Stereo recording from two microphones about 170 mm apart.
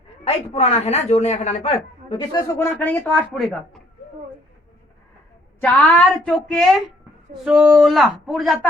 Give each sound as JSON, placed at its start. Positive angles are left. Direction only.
{"t": 0.3, "sound": "a man's voice", "side_deg": 40}
{"t": 2.6, "sound": "a woman's voice", "side_deg": 10}
{"t": 5.5, "sound": "a woman's voice", "side_deg": 10}